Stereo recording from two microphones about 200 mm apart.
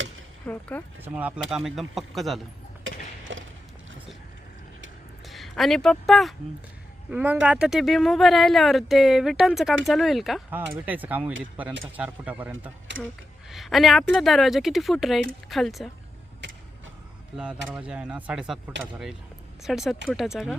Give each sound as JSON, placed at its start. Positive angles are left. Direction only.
{"t": 0.4, "sound": "speech", "side_deg": 10}
{"t": 1.0, "sound": "speech", "side_deg": -10}
{"t": 2.8, "sound": "a sound", "side_deg": -70}
{"t": 5.2, "sound": "a woman's voice", "side_deg": 0}
{"t": 12.9, "sound": "speech", "side_deg": -45}
{"t": 13.5, "sound": "speech", "side_deg": 0}
{"t": 16.4, "sound": "a sound", "side_deg": -65}
{"t": 17.3, "sound": "speech", "side_deg": -5}